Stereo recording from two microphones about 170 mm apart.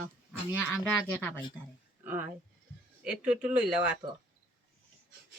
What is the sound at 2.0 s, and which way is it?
Speech, 10° right (ahead or behind).